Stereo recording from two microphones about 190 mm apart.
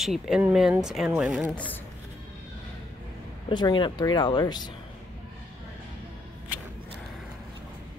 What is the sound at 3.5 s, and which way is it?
Speech, 25° left (ahead or behind).